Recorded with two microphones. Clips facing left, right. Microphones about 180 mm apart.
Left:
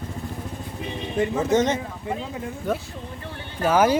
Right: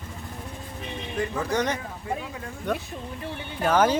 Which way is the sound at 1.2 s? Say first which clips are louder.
Left 6 dB; 20° left (ahead or behind).